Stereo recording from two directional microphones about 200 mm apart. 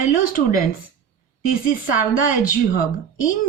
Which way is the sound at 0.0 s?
45° left (ahead or behind).